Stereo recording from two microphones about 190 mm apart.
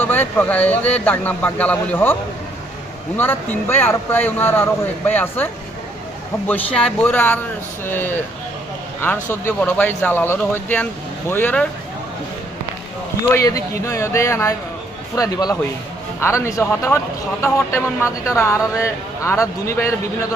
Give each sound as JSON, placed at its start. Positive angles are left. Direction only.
{"t": 0.0, "sound": "speech", "side_deg": 10}
{"t": 3.2, "sound": "speech", "side_deg": 10}
{"t": 6.7, "sound": "speech", "side_deg": 5}
{"t": 9.3, "sound": "speech", "side_deg": 10}
{"t": 13.3, "sound": "a man's voice", "side_deg": 15}